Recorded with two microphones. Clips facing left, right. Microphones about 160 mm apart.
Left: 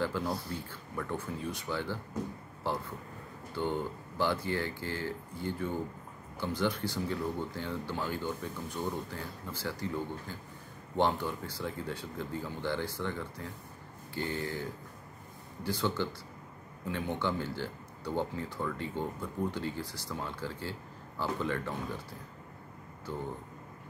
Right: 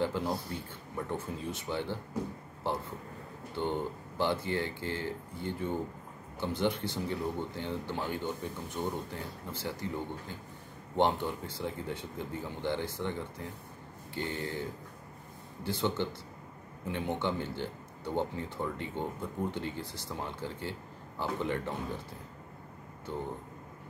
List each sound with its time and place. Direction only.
0.0 s speech: 20° right (ahead or behind)
23.1 s speech: 20° right (ahead or behind)